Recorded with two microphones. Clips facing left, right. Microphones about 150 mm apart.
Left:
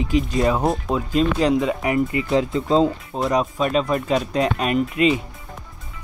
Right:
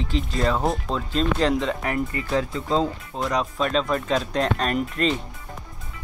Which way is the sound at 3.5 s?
5° left (ahead or behind).